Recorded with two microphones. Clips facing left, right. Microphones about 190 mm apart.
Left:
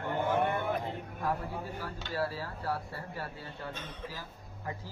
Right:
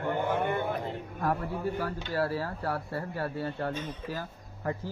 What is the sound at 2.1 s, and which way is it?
A man's voice, 60° right (ahead or behind).